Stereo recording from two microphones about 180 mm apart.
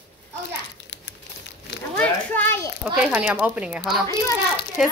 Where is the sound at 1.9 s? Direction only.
10° left (ahead or behind).